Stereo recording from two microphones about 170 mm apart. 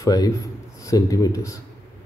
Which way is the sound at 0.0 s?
20° left (ahead or behind).